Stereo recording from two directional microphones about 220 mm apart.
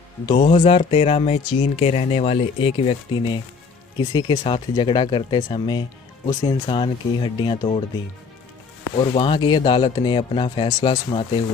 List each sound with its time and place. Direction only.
0.4 s speech: 35° left (ahead or behind)
8.9 s speech: 25° left (ahead or behind)